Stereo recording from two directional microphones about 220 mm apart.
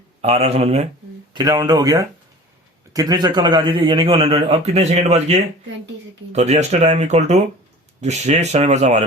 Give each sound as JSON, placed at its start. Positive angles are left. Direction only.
{"t": 0.2, "sound": "a man's voice", "side_deg": -30}
{"t": 1.3, "sound": "a man's voice", "side_deg": -20}